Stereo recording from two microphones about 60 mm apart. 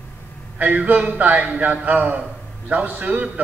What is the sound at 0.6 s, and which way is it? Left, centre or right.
A man's voice, right.